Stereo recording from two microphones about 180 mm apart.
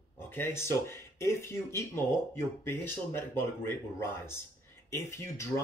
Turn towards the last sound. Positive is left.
turn(degrees=15)  # may be behind; listen again after turning